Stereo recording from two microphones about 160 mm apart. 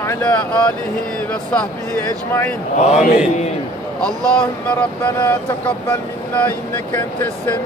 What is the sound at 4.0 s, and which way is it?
Speech, 5° left (ahead or behind).